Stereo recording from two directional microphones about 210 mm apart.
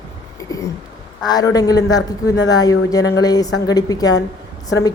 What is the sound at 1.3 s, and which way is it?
A woman's voice, 20° left (ahead or behind).